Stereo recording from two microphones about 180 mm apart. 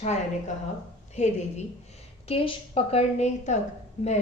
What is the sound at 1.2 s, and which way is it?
A woman's voice, 40° left (ahead or behind).